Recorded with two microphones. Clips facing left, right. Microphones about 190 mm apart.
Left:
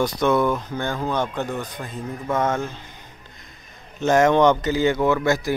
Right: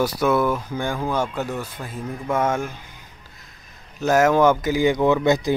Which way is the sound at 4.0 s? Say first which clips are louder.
Even; 5° right (ahead or behind).